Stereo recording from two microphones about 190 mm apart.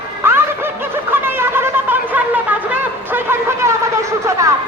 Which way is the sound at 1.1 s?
10° right (ahead or behind).